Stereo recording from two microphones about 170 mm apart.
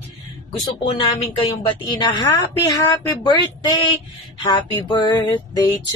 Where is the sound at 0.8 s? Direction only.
35° left (ahead or behind).